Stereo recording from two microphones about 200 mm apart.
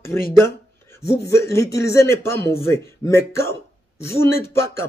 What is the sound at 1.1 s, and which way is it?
Speech, 55° left (ahead or behind).